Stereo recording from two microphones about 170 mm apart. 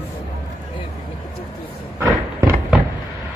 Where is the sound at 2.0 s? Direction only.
15° right (ahead or behind).